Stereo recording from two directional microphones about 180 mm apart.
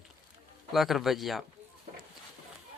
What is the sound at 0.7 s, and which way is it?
Speech, centre (ahead or behind).